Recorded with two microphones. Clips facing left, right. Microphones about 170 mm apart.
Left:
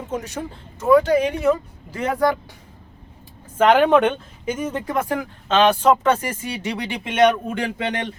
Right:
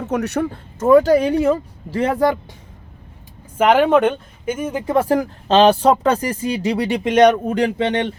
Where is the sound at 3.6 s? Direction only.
5° right (ahead or behind).